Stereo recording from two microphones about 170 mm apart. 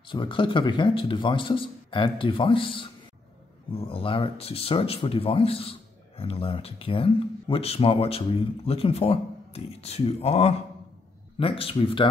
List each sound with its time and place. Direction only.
0.1 s speech: 30° left (ahead or behind)